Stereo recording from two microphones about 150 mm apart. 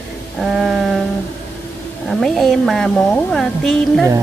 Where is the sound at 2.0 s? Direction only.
Centre (ahead or behind).